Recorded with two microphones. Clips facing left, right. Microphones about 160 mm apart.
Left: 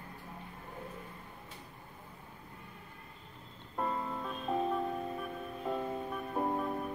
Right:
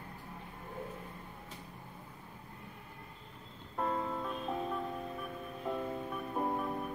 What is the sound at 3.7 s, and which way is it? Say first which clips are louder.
Music: right 1 dB; centre (ahead or behind).